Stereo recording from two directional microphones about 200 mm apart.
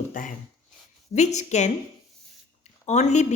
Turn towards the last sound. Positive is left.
turn(degrees=35)  # may be behind; listen again after turning